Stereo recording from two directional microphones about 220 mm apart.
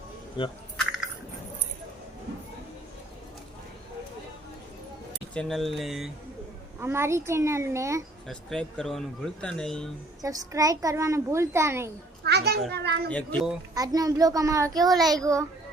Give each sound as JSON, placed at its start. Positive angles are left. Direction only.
{"t": 0.4, "sound": "speech", "side_deg": 20}
{"t": 5.3, "sound": "speech", "side_deg": 5}
{"t": 6.7, "sound": "a child's voice", "side_deg": -10}
{"t": 8.3, "sound": "speech", "side_deg": 5}
{"t": 10.2, "sound": "a child's voice", "side_deg": -15}
{"t": 12.2, "sound": "children playing", "side_deg": -45}
{"t": 12.7, "sound": "a child's voice", "side_deg": -50}
{"t": 13.1, "sound": "speech", "side_deg": 5}
{"t": 13.7, "sound": "a child's voice", "side_deg": -15}